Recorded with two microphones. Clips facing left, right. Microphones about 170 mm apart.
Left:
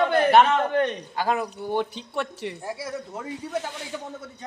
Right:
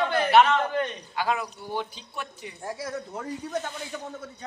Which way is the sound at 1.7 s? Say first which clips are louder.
Left 6 dB; 65° left (ahead or behind).